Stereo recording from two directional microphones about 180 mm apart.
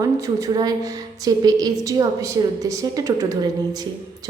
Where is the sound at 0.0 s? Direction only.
20° right (ahead or behind).